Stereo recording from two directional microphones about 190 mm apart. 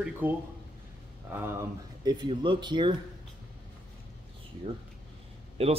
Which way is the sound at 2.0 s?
25° right (ahead or behind).